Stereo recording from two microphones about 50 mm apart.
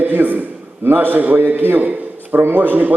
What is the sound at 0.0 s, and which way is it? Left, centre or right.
A man's voice, right.